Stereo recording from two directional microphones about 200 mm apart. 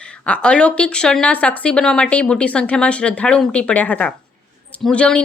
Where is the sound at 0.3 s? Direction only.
5° left (ahead or behind).